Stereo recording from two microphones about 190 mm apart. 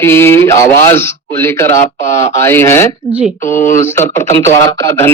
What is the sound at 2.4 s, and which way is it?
Mantra, 10° left (ahead or behind).